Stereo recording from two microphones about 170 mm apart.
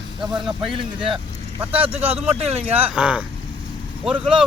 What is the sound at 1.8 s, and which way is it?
Speech, 10° right (ahead or behind).